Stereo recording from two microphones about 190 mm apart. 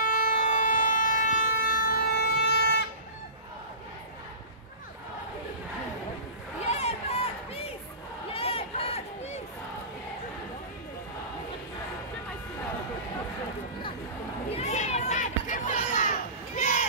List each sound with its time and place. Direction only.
0.0 s vehicle: 45° left (ahead or behind); by 2.8 s 60° left (ahead or behind)
6.6 s crowd: 35° left (ahead or behind)
8.3 s run: 30° left (ahead or behind)
14.5 s children playing: 35° left (ahead or behind)